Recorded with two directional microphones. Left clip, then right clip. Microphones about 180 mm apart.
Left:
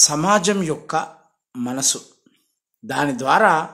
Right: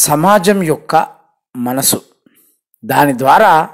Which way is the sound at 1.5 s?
25° right (ahead or behind).